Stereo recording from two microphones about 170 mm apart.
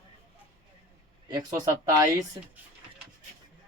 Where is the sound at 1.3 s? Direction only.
25° right (ahead or behind).